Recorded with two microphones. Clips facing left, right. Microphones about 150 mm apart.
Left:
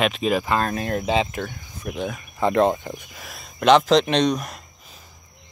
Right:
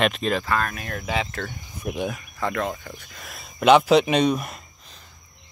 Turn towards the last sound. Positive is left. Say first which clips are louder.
# left 1 dB
turn(degrees=0)  # may be behind; listen again after turning